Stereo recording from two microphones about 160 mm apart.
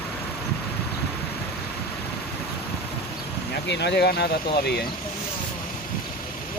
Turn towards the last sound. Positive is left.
turn(degrees=90)